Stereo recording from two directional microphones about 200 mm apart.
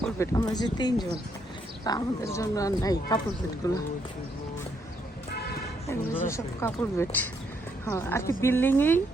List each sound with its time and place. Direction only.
0.3 s speech: 20° left (ahead or behind)
5.9 s speech: 15° left (ahead or behind)